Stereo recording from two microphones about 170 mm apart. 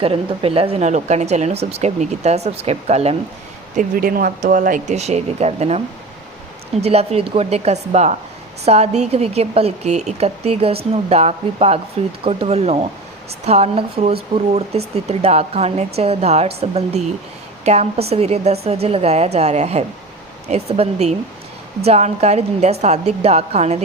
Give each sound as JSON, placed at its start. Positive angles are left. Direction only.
{"t": 0.0, "sound": "speech", "side_deg": -35}
{"t": 3.8, "sound": "speech", "side_deg": -55}
{"t": 6.8, "sound": "speech", "side_deg": -35}